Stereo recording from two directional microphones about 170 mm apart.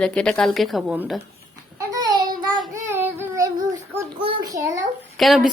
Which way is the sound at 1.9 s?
20° right (ahead or behind).